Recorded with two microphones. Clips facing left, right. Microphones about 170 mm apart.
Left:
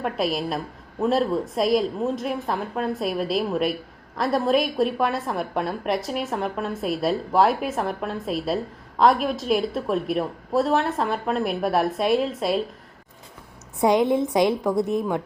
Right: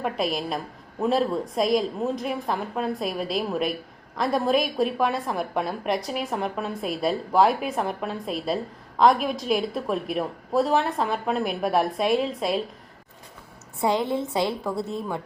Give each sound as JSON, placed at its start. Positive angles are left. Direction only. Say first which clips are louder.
{"t": 0.0, "sound": "a woman's voice", "louder": "left 2 dB", "side_deg": 0}
{"t": 13.8, "sound": "a woman's voice", "louder": "left 5 dB", "side_deg": 20}